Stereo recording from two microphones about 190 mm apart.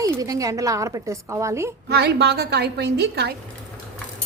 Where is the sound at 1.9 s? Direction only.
60° right (ahead or behind).